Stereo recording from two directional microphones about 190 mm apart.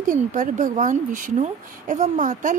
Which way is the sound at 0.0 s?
45° right (ahead or behind).